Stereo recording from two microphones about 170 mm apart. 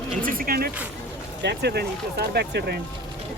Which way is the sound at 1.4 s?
75° right (ahead or behind).